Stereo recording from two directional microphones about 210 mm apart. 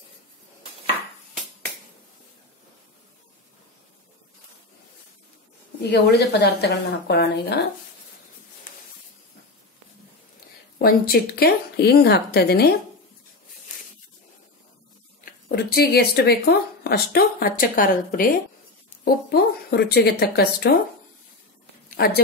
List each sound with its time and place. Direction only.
5.8 s speech: 50° left (ahead or behind)
10.8 s speech: 45° left (ahead or behind)
15.4 s speech: 45° left (ahead or behind)
21.9 s speech: 45° left (ahead or behind)